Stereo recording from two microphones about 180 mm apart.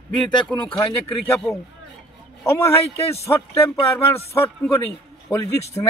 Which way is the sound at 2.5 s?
15° left (ahead or behind).